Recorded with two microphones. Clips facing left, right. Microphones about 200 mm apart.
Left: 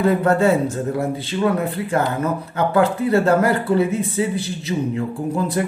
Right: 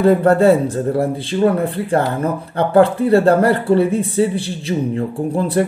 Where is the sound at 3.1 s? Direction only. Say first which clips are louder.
Right 4 dB; 30° right (ahead or behind).